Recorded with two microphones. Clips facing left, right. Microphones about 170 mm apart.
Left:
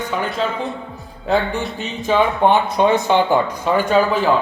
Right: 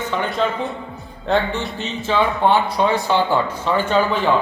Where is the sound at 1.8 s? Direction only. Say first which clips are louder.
Left 3 dB; 15° left (ahead or behind).